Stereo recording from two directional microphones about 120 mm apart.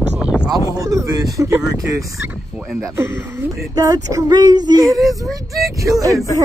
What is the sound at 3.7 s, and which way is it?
Child singing, 30° right (ahead or behind).